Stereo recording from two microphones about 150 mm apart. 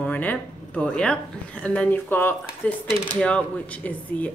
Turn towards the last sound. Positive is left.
turn(degrees=10)  # may be behind; listen again after turning